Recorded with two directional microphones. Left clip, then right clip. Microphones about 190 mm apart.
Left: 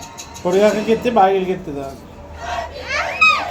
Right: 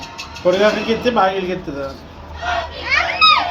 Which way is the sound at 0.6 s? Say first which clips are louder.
Even; 55° left (ahead or behind).